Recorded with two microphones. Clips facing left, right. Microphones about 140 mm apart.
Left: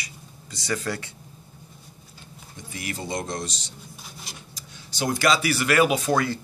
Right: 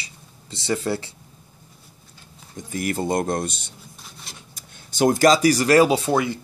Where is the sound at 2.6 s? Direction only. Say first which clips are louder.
Right 9 dB; 45° right (ahead or behind).